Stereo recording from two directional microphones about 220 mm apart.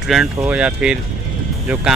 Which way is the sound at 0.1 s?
5° right (ahead or behind).